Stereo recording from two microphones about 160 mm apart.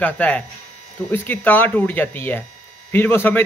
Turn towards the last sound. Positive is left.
turn(degrees=15)  # may be behind; listen again after turning